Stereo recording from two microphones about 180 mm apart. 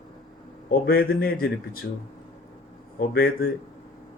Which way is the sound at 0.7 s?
55° left (ahead or behind).